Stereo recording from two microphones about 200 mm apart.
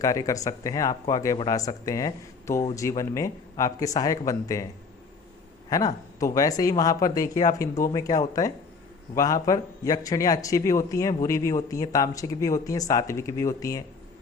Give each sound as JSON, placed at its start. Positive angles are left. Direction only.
{"t": 0.0, "sound": "speech", "side_deg": 15}
{"t": 5.6, "sound": "speech", "side_deg": 20}